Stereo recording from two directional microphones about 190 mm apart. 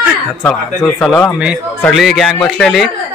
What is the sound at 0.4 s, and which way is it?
A man's voice, 5° left (ahead or behind).